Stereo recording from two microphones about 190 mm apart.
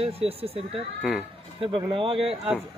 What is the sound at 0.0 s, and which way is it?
Speech, 30° right (ahead or behind).